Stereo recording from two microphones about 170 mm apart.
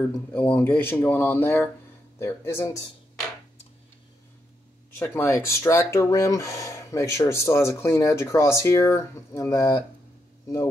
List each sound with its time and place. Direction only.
0.3 s speech: 10° left (ahead or behind)
4.9 s speech: 10° left (ahead or behind)